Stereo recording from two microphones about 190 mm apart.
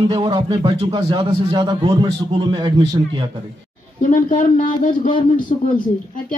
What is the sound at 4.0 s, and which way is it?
A man's voice, 45° left (ahead or behind).